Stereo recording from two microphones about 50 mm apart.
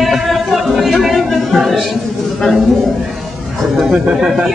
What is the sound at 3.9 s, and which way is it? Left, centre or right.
Speech, centre.